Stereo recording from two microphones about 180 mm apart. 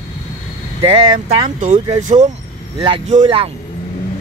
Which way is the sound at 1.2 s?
40° right (ahead or behind).